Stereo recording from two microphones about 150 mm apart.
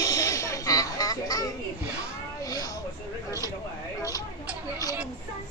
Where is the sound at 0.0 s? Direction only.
25° left (ahead or behind).